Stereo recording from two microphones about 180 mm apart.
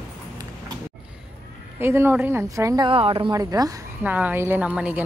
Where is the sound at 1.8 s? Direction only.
15° right (ahead or behind).